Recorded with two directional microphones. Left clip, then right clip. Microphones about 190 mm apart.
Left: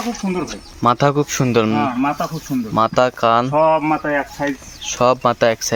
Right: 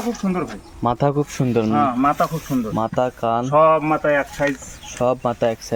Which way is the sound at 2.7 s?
5° left (ahead or behind).